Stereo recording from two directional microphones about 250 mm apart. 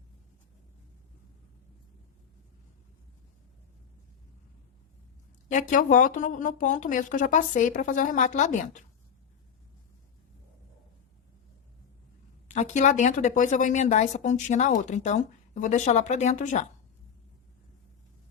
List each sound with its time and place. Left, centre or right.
5.5 s speech: left
12.5 s speech: left